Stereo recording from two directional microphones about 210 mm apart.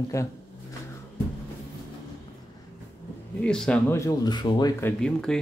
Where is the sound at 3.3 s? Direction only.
5° left (ahead or behind).